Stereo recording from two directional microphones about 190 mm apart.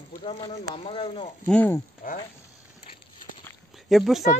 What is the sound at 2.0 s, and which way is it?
Speech, 45° left (ahead or behind).